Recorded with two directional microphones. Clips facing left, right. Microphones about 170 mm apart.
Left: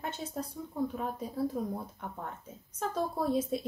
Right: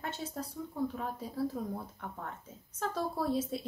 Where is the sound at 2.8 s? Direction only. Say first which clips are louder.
Left 2 dB; 15° left (ahead or behind).